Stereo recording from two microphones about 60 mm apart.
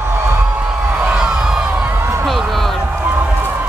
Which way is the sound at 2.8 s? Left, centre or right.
Right.